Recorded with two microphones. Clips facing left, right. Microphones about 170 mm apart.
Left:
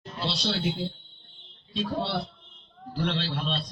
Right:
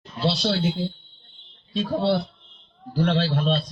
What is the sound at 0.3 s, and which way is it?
Speech, 45° right (ahead or behind).